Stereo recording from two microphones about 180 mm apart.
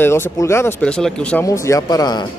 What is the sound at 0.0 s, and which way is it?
Speech, 15° left (ahead or behind).